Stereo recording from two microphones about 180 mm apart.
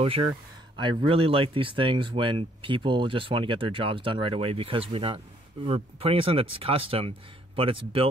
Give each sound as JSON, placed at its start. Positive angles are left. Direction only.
{"t": 0.0, "sound": "speech", "side_deg": -30}